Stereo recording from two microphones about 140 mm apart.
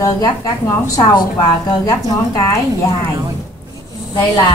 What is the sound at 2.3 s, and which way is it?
Speech, 25° left (ahead or behind).